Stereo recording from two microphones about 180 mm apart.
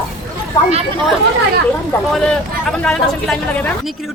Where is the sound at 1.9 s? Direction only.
5° left (ahead or behind).